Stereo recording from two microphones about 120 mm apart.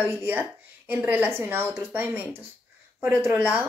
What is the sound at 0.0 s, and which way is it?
Speech, 15° right (ahead or behind).